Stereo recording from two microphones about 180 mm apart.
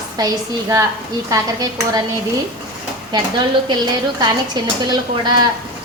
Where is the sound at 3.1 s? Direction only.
25° right (ahead or behind).